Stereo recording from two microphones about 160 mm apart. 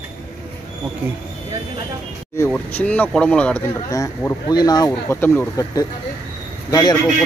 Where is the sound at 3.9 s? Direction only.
20° left (ahead or behind).